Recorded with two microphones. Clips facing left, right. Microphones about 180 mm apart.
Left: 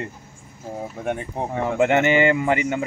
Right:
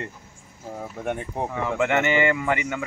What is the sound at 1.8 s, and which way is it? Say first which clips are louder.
Speech: left 4 dB; 25° left (ahead or behind).